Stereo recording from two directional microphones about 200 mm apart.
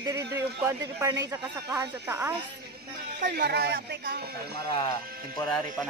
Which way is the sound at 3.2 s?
55° right (ahead or behind).